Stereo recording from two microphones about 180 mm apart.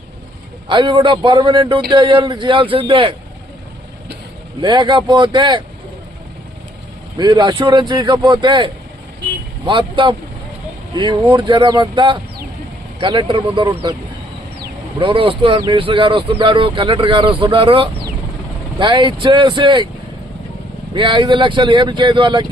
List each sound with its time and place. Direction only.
0.7 s speech: 25° right (ahead or behind)
4.6 s speech: 25° right (ahead or behind)
7.2 s speech: 25° right (ahead or behind)
14.9 s speech: 30° right (ahead or behind)
20.9 s speech: 25° right (ahead or behind)